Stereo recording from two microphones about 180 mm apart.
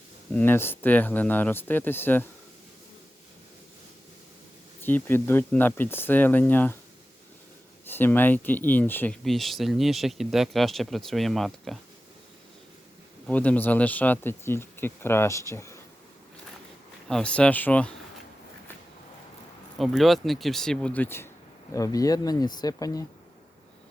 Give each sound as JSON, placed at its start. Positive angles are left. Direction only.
{"t": 0.3, "sound": "speech", "side_deg": 10}
{"t": 4.8, "sound": "speech", "side_deg": 10}
{"t": 7.9, "sound": "speech", "side_deg": 10}
{"t": 13.2, "sound": "speech", "side_deg": 10}
{"t": 17.1, "sound": "speech", "side_deg": 5}
{"t": 19.8, "sound": "speech", "side_deg": 0}